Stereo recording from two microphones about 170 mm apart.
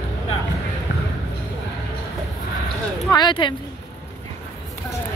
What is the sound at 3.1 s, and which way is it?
Speech, 25° left (ahead or behind).